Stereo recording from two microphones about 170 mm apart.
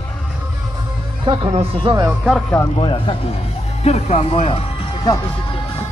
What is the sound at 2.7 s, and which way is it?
Speech, 30° left (ahead or behind).